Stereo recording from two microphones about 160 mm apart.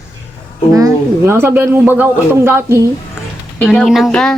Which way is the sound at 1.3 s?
15° right (ahead or behind).